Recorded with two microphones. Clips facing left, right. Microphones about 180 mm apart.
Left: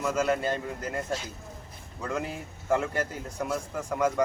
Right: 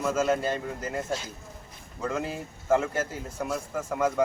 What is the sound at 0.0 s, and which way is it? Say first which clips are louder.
A man's voice: right 1 dB; centre (ahead or behind).